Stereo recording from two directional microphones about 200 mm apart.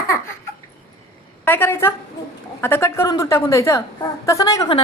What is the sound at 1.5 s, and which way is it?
A woman's voice, 10° left (ahead or behind).